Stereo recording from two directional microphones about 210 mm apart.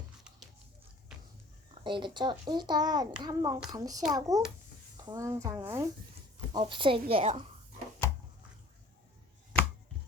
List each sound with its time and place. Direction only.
1.8 s a child's voice: 20° right (ahead or behind)